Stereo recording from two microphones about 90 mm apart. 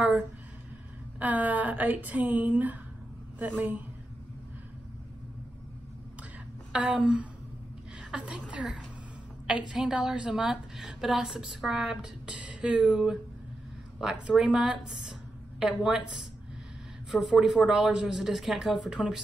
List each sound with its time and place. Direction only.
1.2 s a woman's voice: 15° right (ahead or behind)
6.7 s a woman's voice: 10° right (ahead or behind)
8.5 s a woman's voice: 10° right (ahead or behind)